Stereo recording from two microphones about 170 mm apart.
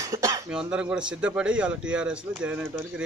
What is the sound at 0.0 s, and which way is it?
Cough, 20° right (ahead or behind).